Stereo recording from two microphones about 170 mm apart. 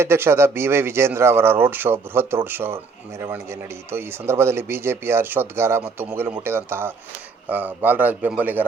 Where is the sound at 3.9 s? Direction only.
15° right (ahead or behind).